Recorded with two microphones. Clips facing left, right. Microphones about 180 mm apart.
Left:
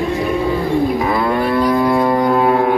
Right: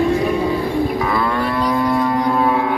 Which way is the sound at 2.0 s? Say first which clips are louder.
Left 3 dB; 45° left (ahead or behind).